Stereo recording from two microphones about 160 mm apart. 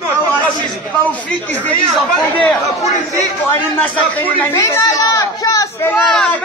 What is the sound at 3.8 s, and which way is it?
Speech, 10° left (ahead or behind).